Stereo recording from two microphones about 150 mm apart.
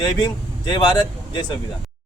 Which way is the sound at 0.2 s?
25° left (ahead or behind).